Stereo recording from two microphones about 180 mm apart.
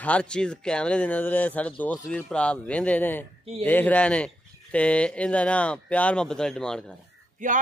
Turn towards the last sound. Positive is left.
turn(degrees=-45)  # may be behind; listen again after turning